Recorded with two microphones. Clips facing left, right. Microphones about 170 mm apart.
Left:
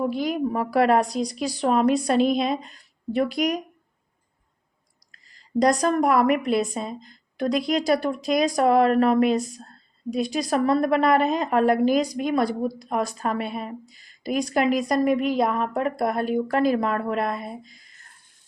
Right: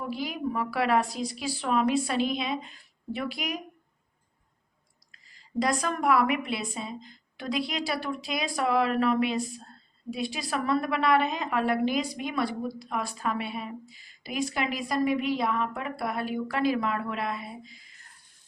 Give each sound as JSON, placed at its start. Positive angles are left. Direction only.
{"t": 0.3, "sound": "a woman's voice", "side_deg": 45}
{"t": 5.1, "sound": "a woman's voice", "side_deg": 40}